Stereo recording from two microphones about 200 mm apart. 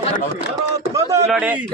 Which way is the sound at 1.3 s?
5° right (ahead or behind).